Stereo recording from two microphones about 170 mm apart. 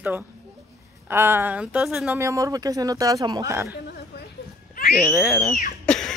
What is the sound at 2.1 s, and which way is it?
Speech, 20° right (ahead or behind).